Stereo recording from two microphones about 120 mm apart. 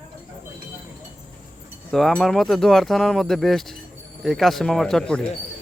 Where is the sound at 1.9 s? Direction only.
5° left (ahead or behind).